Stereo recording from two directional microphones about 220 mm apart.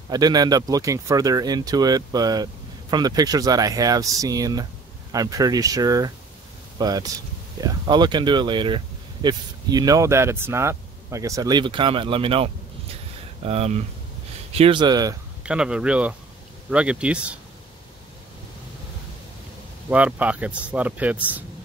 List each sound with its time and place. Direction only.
0.1 s speech: 15° right (ahead or behind)
15.4 s speech: 5° right (ahead or behind)
19.9 s speech: 5° right (ahead or behind)